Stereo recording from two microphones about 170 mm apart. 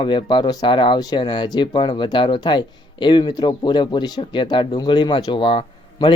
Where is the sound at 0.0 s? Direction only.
30° left (ahead or behind).